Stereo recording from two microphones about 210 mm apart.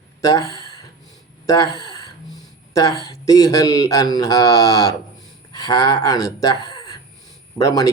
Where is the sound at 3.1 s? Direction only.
15° left (ahead or behind).